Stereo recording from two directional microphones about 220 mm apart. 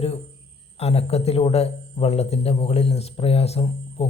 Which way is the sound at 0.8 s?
30° left (ahead or behind).